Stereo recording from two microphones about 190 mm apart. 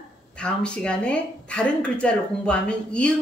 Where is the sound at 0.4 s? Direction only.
5° left (ahead or behind).